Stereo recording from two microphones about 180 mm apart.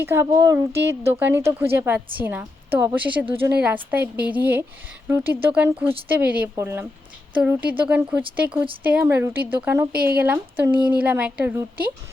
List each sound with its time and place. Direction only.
0.0 s a woman's voice: 15° right (ahead or behind)
9.9 s speech: 55° right (ahead or behind)
10.2 s a woman's voice: 10° right (ahead or behind)